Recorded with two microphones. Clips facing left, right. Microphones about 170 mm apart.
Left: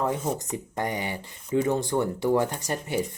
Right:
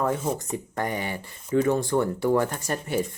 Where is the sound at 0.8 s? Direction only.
20° left (ahead or behind).